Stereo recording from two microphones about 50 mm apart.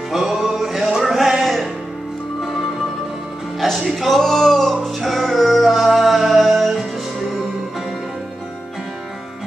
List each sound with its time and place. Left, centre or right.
0.1 s music: centre
3.6 s music: centre